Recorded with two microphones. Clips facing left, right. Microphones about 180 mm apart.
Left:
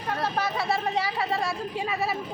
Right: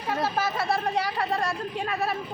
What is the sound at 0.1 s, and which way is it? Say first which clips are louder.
Speech: right 1 dB; centre (ahead or behind).